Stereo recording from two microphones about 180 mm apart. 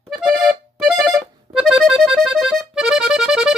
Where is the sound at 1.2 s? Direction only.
Centre (ahead or behind).